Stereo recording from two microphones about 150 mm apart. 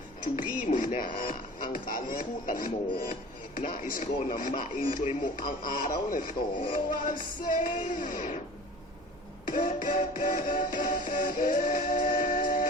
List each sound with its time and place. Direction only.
0.3 s music: 60° left (ahead or behind)
9.5 s music: 60° left (ahead or behind)